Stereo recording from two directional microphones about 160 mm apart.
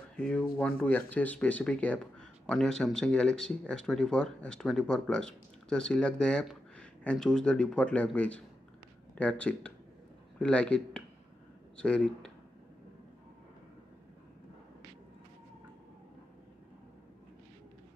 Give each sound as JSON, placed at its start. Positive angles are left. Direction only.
{"t": 0.2, "sound": "speech", "side_deg": 5}